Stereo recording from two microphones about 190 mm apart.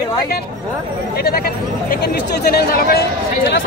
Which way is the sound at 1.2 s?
55° left (ahead or behind).